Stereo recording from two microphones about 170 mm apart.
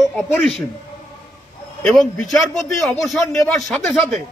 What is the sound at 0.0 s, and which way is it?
Speech, centre (ahead or behind).